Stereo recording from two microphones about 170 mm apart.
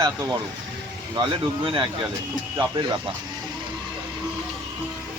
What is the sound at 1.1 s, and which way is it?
Speech, 30° right (ahead or behind).